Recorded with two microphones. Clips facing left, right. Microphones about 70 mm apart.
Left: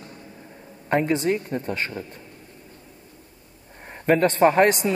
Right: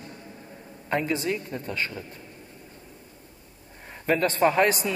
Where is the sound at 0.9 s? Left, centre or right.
Left.